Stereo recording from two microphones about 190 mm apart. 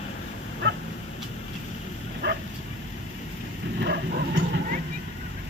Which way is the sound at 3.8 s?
60° right (ahead or behind).